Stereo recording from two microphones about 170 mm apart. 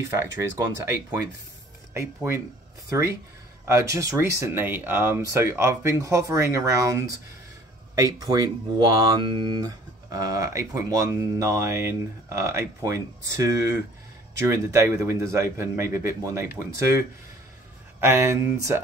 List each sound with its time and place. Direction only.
0.0 s speech: 15° right (ahead or behind)
18.0 s speech: 15° right (ahead or behind)